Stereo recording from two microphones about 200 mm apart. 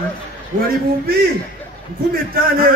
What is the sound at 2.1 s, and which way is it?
Speech, 45° right (ahead or behind).